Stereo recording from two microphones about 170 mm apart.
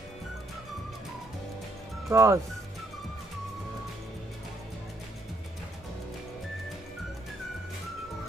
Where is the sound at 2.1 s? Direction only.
20° right (ahead or behind).